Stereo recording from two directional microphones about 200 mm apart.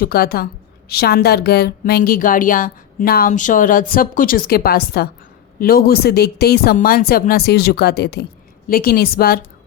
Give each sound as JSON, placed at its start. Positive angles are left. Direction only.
{"t": 0.0, "sound": "a woman's voice", "side_deg": 50}